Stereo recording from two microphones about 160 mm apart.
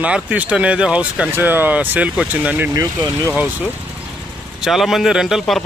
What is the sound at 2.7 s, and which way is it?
Speech, 20° right (ahead or behind).